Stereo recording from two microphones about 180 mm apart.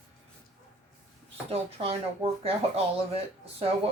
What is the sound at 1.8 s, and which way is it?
Speech, 30° right (ahead or behind).